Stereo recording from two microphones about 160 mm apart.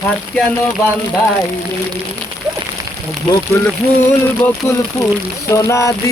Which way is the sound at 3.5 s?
15° left (ahead or behind).